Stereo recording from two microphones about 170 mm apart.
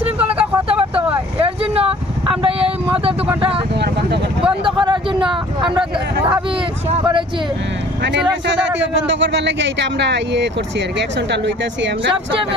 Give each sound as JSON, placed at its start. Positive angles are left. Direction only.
{"t": 0.2, "sound": "vehicle", "side_deg": -10}
{"t": 0.7, "sound": "vehicle", "side_deg": -35}
{"t": 3.7, "sound": "vehicle", "side_deg": -80}
{"t": 4.6, "sound": "a sound", "side_deg": -25}
{"t": 8.7, "sound": "speech", "side_deg": -90}